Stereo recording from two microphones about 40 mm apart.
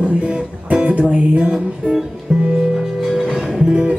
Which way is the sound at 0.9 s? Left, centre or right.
Right.